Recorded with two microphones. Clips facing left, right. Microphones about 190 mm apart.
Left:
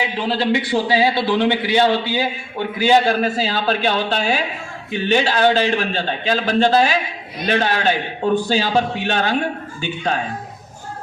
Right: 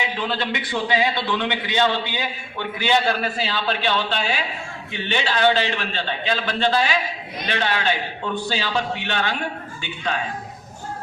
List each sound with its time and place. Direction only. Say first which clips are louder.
0.0 s a man's voice: left 5 dB; 35° left (ahead or behind)